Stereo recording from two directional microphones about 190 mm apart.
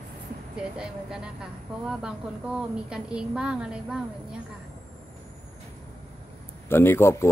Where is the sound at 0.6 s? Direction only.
5° right (ahead or behind).